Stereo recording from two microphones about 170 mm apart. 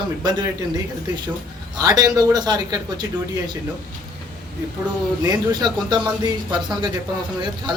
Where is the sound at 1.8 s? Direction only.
25° right (ahead or behind).